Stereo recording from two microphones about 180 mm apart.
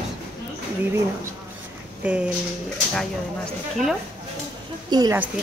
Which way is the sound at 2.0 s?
5° right (ahead or behind).